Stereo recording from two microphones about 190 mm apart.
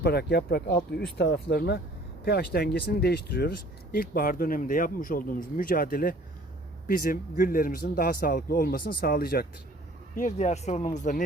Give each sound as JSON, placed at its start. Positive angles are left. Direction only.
{"t": 0.0, "sound": "a man's voice", "side_deg": 60}
{"t": 10.2, "sound": "speech", "side_deg": 40}